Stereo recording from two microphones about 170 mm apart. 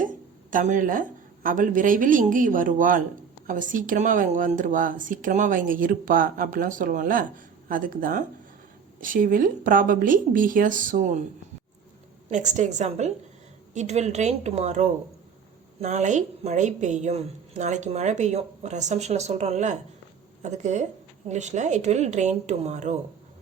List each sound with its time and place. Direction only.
0.0 s speech: 50° right (ahead or behind)
12.3 s speech: 45° right (ahead or behind)